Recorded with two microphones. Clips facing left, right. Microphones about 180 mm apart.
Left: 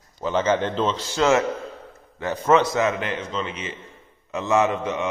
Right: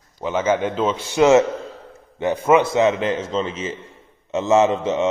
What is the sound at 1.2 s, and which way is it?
A man's voice, 20° right (ahead or behind).